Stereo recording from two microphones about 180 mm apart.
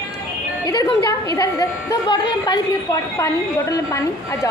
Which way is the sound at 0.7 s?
20° left (ahead or behind).